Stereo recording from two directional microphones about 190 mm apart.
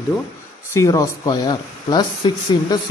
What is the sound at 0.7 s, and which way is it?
Speech, 15° left (ahead or behind).